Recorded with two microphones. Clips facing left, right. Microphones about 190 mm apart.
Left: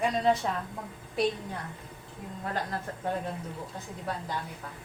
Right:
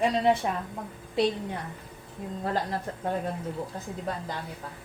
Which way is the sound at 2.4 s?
35° right (ahead or behind).